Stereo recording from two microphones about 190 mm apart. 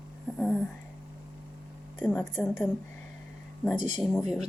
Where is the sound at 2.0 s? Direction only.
10° left (ahead or behind).